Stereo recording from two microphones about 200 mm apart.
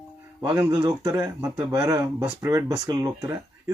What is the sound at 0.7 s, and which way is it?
Speech, 20° right (ahead or behind).